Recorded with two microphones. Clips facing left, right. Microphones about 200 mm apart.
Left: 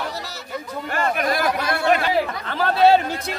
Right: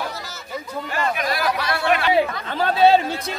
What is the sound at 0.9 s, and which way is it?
Chatter, 50° left (ahead or behind).